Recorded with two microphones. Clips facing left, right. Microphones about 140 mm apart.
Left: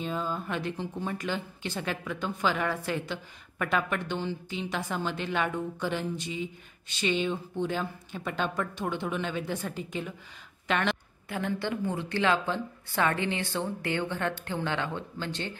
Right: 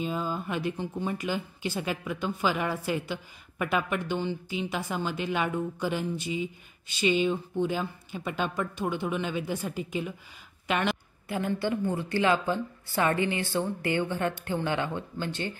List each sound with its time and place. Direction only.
0.0 s a woman's voice: 5° right (ahead or behind)